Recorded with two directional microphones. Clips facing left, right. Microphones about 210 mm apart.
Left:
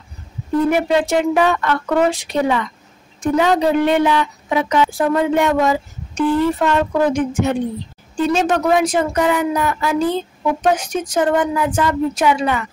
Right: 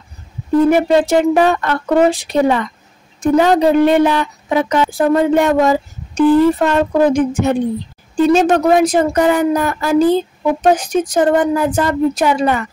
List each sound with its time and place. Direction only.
0.7 s speech: 35° right (ahead or behind)